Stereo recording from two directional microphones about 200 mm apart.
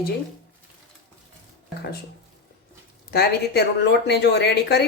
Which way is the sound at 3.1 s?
55° left (ahead or behind).